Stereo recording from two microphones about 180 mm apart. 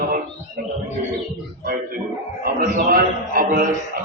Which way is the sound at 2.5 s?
55° right (ahead or behind).